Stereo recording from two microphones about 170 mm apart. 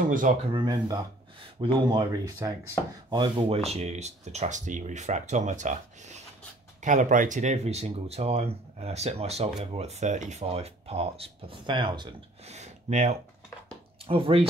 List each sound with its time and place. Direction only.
0.5 s speech: 25° right (ahead or behind)
12.4 s speech: 40° right (ahead or behind)
14.0 s speech: 30° right (ahead or behind)